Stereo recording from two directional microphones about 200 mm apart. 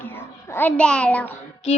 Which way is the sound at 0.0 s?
10° left (ahead or behind).